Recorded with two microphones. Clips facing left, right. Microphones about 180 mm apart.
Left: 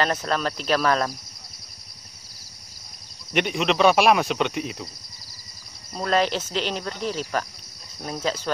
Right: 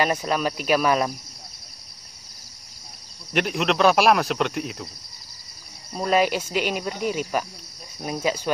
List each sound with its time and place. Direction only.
0.0 s cricket: 10° right (ahead or behind)
3.3 s speech: centre (ahead or behind)
5.9 s cricket: 10° right (ahead or behind)